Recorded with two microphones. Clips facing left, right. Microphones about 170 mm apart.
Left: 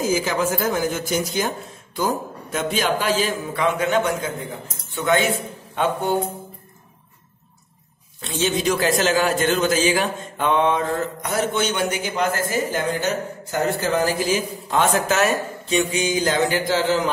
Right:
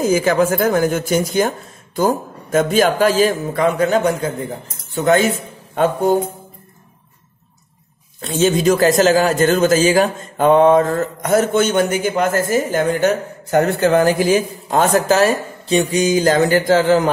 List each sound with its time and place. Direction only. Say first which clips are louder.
0.1 s a man's voice: right 6 dB; 55° right (ahead or behind)
8.2 s a man's voice: right 7 dB; 45° right (ahead or behind)